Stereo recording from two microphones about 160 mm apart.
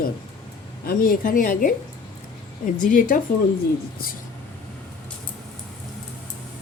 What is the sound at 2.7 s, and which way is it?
Speech, 55° left (ahead or behind).